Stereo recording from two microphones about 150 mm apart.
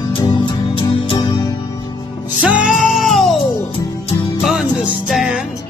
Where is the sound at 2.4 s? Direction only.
5° right (ahead or behind).